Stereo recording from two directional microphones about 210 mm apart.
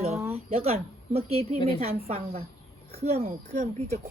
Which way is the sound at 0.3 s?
30° right (ahead or behind).